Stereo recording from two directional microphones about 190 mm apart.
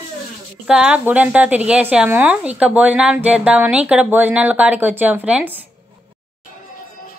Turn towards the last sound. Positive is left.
turn(degrees=-5)  # may be behind; listen again after turning